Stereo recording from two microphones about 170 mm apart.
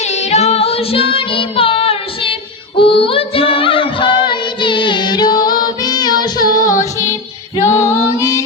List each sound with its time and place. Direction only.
0.0 s child singing: 40° left (ahead or behind)
2.7 s female singing: 30° left (ahead or behind)
6.5 s music: 20° left (ahead or behind)
7.6 s female singing: 40° left (ahead or behind)
8.1 s music: 20° left (ahead or behind)